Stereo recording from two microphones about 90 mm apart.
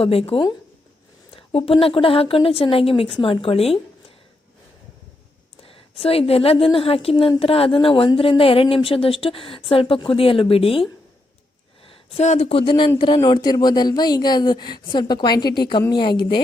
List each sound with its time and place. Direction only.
0.0 s a woman's voice: 90° left
5.6 s a woman's voice: 90° left
11.9 s a woman's voice: 90° left; by 16.4 s 65° left (ahead or behind)